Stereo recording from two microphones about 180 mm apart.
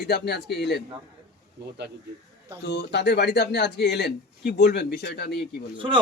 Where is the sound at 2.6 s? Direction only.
70° left (ahead or behind).